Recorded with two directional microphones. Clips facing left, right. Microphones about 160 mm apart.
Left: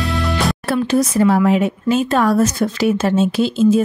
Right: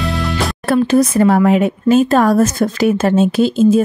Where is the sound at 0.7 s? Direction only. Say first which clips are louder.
Right 5 dB; 50° right (ahead or behind).